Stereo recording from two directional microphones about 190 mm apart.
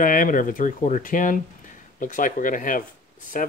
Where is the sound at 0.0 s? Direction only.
45° left (ahead or behind).